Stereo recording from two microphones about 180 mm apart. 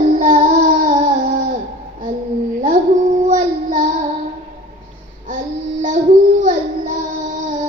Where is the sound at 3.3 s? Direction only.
45° right (ahead or behind).